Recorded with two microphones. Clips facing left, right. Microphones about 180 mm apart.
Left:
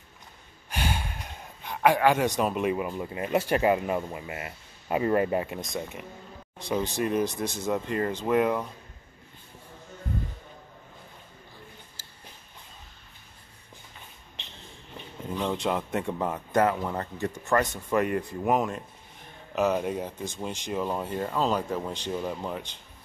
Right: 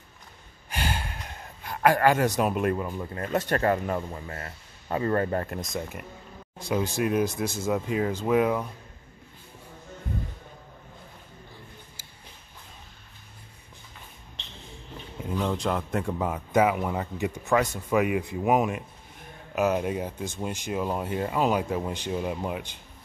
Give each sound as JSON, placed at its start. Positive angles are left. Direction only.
{"t": 0.9, "sound": "speech", "side_deg": -5}
{"t": 15.2, "sound": "speech", "side_deg": -5}
{"t": 18.4, "sound": "speech", "side_deg": -15}